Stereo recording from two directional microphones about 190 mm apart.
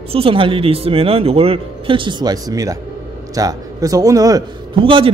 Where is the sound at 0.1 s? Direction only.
30° right (ahead or behind).